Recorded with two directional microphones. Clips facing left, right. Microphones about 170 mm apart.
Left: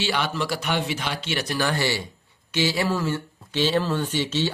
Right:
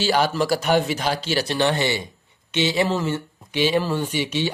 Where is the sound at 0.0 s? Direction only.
40° right (ahead or behind).